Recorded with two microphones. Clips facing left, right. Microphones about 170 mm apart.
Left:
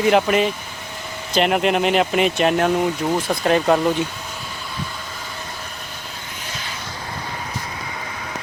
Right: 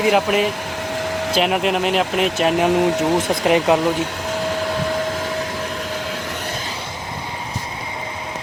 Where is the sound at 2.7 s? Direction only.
90° right.